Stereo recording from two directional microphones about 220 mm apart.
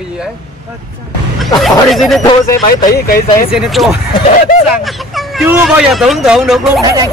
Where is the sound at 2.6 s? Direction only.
40° left (ahead or behind).